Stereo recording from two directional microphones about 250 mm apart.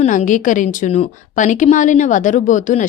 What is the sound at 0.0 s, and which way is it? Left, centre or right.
Speech, left.